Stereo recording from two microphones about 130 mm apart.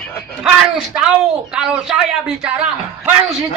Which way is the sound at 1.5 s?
5° right (ahead or behind).